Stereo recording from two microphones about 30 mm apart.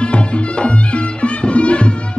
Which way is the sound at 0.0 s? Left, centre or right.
Left.